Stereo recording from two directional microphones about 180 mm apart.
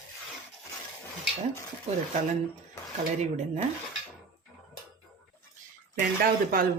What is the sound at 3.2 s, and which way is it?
Speech, 40° right (ahead or behind).